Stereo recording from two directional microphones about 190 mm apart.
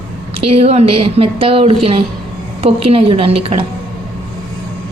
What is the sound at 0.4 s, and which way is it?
A woman's voice, 30° right (ahead or behind).